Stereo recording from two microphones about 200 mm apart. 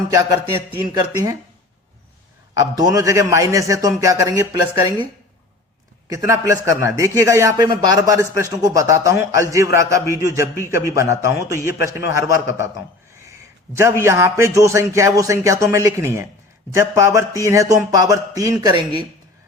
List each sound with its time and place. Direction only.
0.1 s a man's voice: 20° right (ahead or behind)
2.6 s a man's voice: 20° right (ahead or behind)
6.1 s a man's voice: 15° right (ahead or behind)
14.0 s a man's voice: 15° right (ahead or behind)